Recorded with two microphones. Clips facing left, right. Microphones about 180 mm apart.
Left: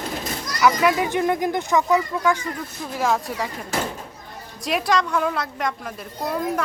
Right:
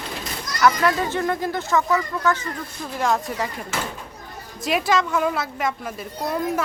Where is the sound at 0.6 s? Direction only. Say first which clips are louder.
Left 1 dB; 5° left (ahead or behind).